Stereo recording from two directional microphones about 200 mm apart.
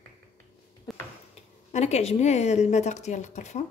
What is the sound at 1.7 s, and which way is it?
A woman's voice, 35° left (ahead or behind).